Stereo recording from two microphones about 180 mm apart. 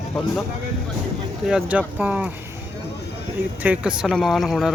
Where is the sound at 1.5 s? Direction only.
10° right (ahead or behind).